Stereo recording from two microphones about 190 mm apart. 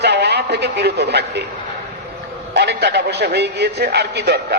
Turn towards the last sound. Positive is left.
turn(degrees=-60)  # may be behind; listen again after turning